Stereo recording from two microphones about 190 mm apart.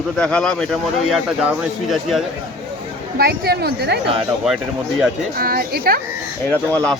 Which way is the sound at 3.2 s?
55° right (ahead or behind).